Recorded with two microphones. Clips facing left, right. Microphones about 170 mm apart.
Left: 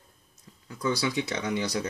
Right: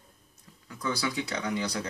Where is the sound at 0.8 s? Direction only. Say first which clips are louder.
Left 3 dB; 25° left (ahead or behind).